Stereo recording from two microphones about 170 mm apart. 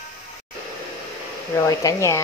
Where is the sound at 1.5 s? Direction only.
15° left (ahead or behind).